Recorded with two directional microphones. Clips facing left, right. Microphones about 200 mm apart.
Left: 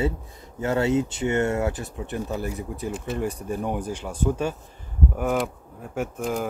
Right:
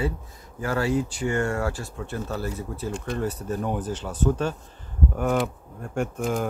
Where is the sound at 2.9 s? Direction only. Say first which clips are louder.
Even; 5° left (ahead or behind).